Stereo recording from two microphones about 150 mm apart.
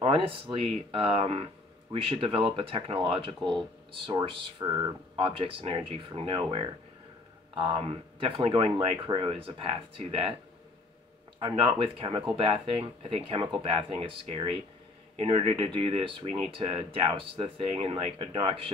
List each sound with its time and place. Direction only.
0.0 s speech: 35° right (ahead or behind)
11.4 s speech: 30° right (ahead or behind)